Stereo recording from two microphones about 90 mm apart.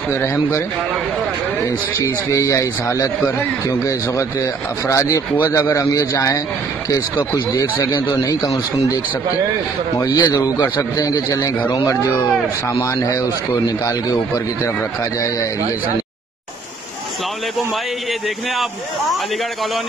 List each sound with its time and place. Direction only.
0.1 s speech: 30° left (ahead or behind)
2.0 s speech: 35° left (ahead or behind)
7.9 s a man's voice: 50° left (ahead or behind)
10.0 s a man's voice: 45° left (ahead or behind)